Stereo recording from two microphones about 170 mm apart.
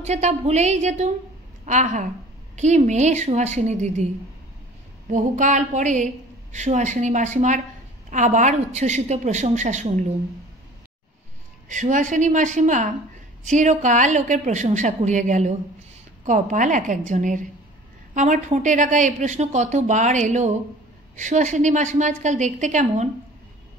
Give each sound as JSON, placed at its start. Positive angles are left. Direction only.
{"t": 0.0, "sound": "a woman's voice", "side_deg": -40}
{"t": 5.1, "sound": "speech", "side_deg": -45}
{"t": 11.7, "sound": "speech", "side_deg": -50}